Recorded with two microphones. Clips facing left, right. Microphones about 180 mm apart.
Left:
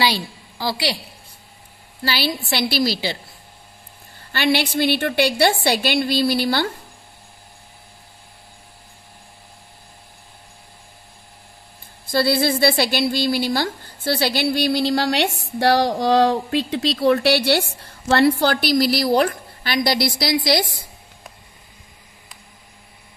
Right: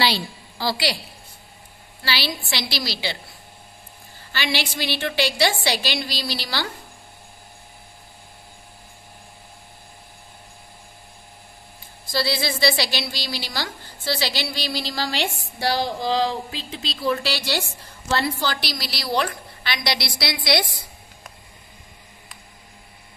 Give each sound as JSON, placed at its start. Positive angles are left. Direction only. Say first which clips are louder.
{"t": 0.6, "sound": "a woman's voice", "louder": "left 1 dB", "side_deg": 20}
{"t": 2.0, "sound": "a woman's voice", "louder": "left 4 dB", "side_deg": 50}
{"t": 4.3, "sound": "a woman's voice", "louder": "left 7 dB", "side_deg": 55}
{"t": 12.1, "sound": "a woman's voice", "louder": "left 6 dB", "side_deg": 55}